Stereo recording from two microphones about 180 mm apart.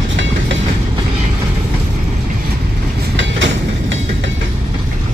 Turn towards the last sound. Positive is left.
turn(degrees=-90)